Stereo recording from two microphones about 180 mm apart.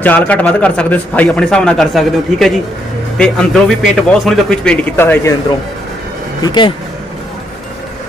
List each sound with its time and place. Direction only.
0.0 s a man's voice: 10° left (ahead or behind)
6.4 s speech: 25° left (ahead or behind)